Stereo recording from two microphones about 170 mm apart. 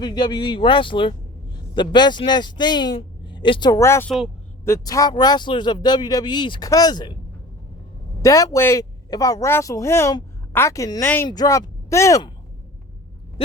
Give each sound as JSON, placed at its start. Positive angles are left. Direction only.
{"t": 0.0, "sound": "speech", "side_deg": 25}
{"t": 8.2, "sound": "speech", "side_deg": 20}